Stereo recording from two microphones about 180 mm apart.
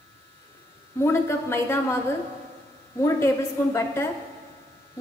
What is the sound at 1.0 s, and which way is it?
Speech, 15° left (ahead or behind).